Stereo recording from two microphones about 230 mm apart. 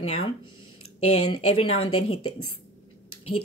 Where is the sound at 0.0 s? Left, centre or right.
Left.